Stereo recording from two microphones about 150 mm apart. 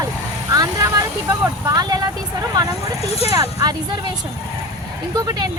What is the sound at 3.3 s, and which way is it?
Speech, 25° right (ahead or behind).